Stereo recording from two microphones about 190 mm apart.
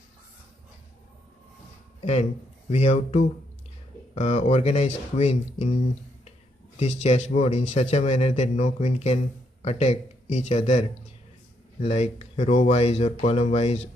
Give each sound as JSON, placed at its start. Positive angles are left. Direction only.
{"t": 2.7, "sound": "speech", "side_deg": 35}
{"t": 6.8, "sound": "speech", "side_deg": 35}